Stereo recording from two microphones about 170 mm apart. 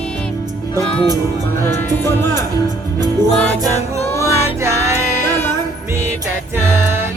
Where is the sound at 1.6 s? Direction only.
15° left (ahead or behind).